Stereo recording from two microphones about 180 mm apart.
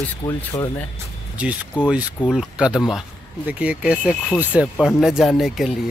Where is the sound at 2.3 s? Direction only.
Centre (ahead or behind).